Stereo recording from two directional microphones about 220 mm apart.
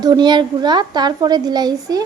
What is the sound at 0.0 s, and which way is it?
A woman's voice, 20° right (ahead or behind).